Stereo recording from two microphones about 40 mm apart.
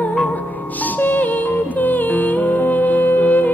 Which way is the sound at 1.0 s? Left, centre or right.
Left.